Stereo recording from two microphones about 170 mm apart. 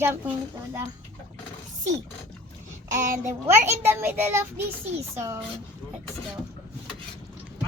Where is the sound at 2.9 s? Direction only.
45° right (ahead or behind).